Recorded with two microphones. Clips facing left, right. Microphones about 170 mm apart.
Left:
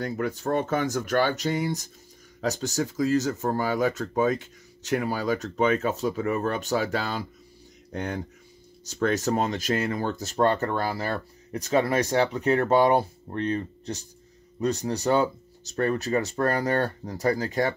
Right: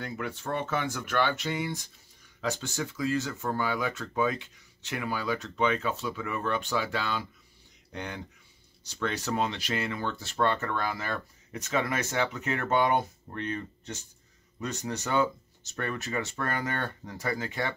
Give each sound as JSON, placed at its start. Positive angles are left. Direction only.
{"t": 0.0, "sound": "speech", "side_deg": 40}